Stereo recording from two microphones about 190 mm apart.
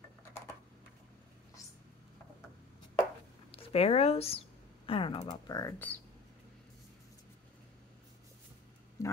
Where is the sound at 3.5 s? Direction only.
30° left (ahead or behind); by 6.0 s 10° left (ahead or behind).